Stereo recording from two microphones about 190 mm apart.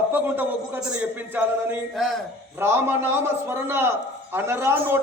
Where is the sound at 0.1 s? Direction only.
10° right (ahead or behind).